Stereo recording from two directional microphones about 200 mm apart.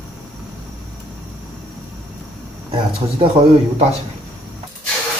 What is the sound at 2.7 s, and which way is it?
Speech, 25° right (ahead or behind).